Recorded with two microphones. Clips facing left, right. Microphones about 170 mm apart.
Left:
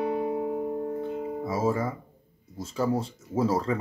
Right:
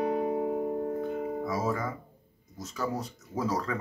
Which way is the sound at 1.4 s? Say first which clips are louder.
Left 7 dB; 25° left (ahead or behind).